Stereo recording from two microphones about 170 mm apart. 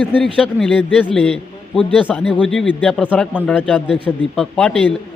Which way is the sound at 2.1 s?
5° left (ahead or behind).